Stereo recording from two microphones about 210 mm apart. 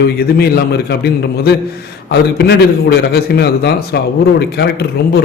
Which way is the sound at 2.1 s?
50° left (ahead or behind).